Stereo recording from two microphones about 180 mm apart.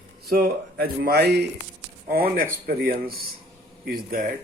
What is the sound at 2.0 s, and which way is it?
Speech, 55° right (ahead or behind).